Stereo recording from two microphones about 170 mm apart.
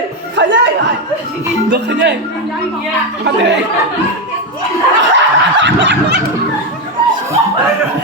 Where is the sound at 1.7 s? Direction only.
90° right.